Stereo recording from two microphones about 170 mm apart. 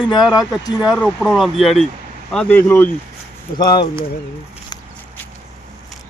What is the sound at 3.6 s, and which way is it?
Speech, 25° left (ahead or behind).